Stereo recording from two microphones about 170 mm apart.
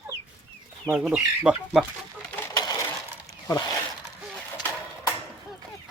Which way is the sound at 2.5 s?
20° left (ahead or behind).